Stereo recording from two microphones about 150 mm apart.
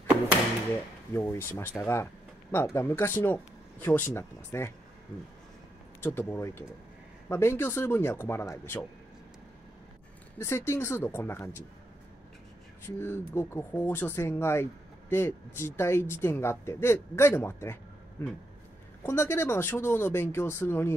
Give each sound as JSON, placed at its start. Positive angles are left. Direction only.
{"t": 1.1, "sound": "speech", "side_deg": 15}
{"t": 5.9, "sound": "speech", "side_deg": 15}
{"t": 10.4, "sound": "speech", "side_deg": 15}
{"t": 12.8, "sound": "speech", "side_deg": 15}